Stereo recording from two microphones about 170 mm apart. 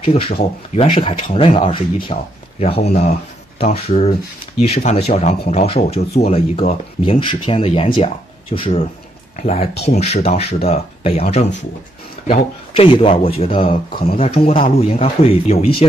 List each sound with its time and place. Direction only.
0.0 s speech: 35° left (ahead or behind)
12.7 s speech: 30° left (ahead or behind)